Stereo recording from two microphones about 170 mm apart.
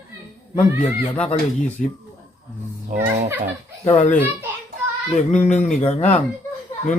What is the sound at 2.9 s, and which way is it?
Turkey, 50° right (ahead or behind).